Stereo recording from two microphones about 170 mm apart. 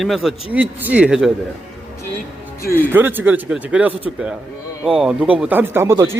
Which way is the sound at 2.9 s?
10° right (ahead or behind).